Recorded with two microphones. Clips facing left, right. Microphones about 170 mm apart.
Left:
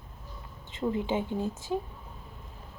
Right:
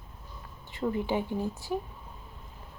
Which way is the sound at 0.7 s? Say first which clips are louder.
Even; 20° left (ahead or behind).